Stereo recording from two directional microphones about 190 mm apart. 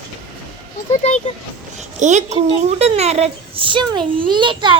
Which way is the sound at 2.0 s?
40° right (ahead or behind).